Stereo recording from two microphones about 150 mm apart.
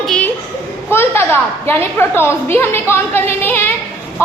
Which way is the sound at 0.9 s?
15° left (ahead or behind).